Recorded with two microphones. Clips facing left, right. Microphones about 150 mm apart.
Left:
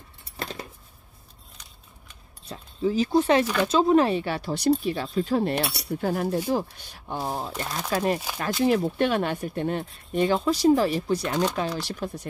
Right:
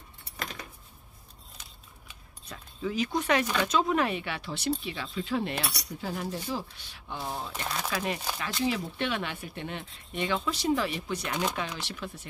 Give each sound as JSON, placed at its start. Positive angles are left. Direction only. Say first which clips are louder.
{"t": 0.4, "sound": "a sound", "louder": "left 5 dB", "side_deg": 30}
{"t": 2.4, "sound": "speech", "louder": "left 8 dB", "side_deg": 30}
{"t": 5.5, "sound": "speech", "louder": "left 7 dB", "side_deg": 25}
{"t": 5.9, "sound": "speech", "louder": "left 9 dB", "side_deg": 55}
{"t": 8.6, "sound": "speech", "louder": "left 8 dB", "side_deg": 50}